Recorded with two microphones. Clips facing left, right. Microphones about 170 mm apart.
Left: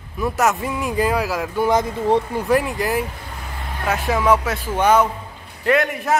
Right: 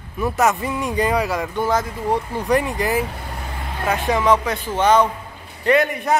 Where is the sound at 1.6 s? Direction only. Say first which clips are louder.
Left 5 dB; 20° left (ahead or behind).